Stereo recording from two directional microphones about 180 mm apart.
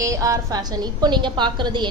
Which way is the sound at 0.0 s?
20° right (ahead or behind).